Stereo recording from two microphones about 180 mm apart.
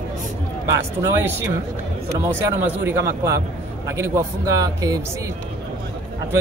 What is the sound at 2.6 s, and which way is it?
Speech, 10° right (ahead or behind).